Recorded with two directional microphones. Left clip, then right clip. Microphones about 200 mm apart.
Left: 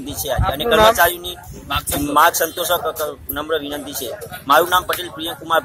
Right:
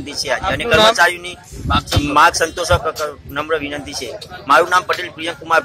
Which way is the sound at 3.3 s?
5° left (ahead or behind).